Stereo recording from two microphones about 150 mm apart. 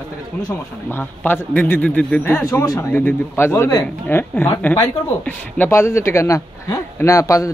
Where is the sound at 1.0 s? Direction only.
10° left (ahead or behind).